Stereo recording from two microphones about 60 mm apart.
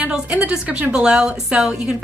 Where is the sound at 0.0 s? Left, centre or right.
Right.